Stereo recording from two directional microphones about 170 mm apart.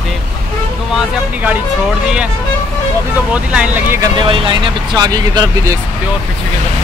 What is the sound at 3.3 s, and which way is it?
Speech, 5° right (ahead or behind).